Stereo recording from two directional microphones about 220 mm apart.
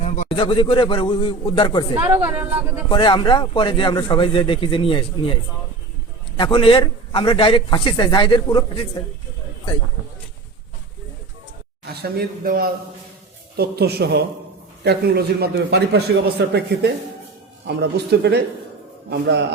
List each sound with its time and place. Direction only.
0.0 s a man's voice: 25° left (ahead or behind)
2.0 s a woman's voice: 10° right (ahead or behind)
2.9 s a man's voice: 20° left (ahead or behind)
11.9 s a man's voice: 45° right (ahead or behind)